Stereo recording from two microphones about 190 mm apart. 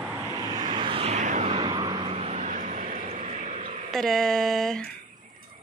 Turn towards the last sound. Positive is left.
turn(degrees=0)  # may be behind; listen again after turning